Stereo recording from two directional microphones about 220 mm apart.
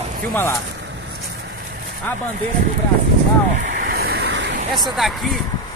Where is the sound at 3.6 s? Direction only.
45° right (ahead or behind).